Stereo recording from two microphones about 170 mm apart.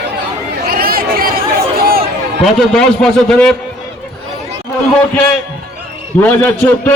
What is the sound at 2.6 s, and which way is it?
Speech, 5° left (ahead or behind).